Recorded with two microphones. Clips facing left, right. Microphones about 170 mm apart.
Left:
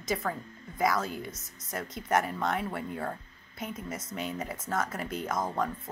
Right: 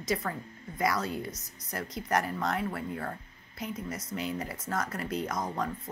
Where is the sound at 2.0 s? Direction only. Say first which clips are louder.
Left 2 dB; 5° left (ahead or behind).